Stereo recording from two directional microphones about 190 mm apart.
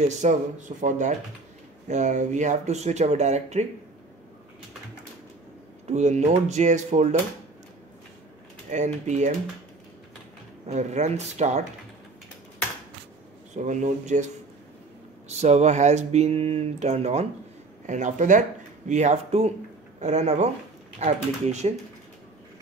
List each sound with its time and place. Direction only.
0.2 s speech: 40° right (ahead or behind)
5.9 s speech: 35° right (ahead or behind)
8.6 s speech: 40° right (ahead or behind)
10.7 s speech: 35° right (ahead or behind)
13.6 s speech: 40° right (ahead or behind)